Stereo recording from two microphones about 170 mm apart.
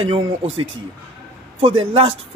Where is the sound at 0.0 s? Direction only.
30° right (ahead or behind).